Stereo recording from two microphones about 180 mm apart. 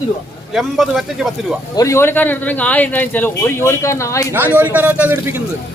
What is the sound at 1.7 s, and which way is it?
A man's voice, 15° left (ahead or behind).